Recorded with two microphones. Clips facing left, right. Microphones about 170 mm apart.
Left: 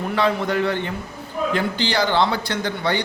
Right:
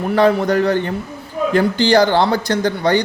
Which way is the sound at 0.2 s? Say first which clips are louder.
Right 7 dB; 45° right (ahead or behind).